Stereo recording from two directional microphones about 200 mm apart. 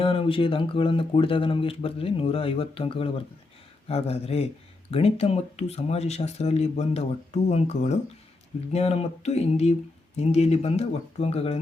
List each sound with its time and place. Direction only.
0.0 s speech: 25° left (ahead or behind)